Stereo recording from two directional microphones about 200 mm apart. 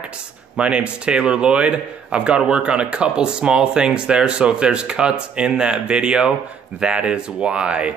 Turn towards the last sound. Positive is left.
turn(degrees=-5)  # may be behind; listen again after turning